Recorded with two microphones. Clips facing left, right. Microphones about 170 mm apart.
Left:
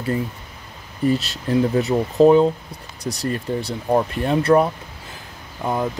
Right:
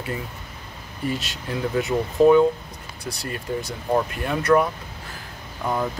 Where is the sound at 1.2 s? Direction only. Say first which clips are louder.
Left 8 dB; 35° left (ahead or behind).